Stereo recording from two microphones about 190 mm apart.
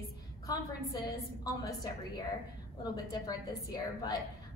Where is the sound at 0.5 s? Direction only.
20° left (ahead or behind).